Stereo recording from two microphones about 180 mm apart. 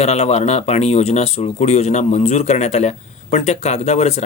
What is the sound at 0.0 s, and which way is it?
Speech, 35° left (ahead or behind).